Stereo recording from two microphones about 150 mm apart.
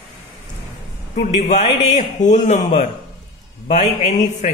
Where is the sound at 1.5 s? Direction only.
50° left (ahead or behind).